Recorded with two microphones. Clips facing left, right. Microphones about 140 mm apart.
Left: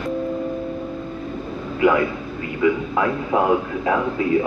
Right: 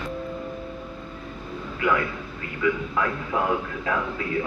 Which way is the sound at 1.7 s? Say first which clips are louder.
Left 7 dB; 20° left (ahead or behind).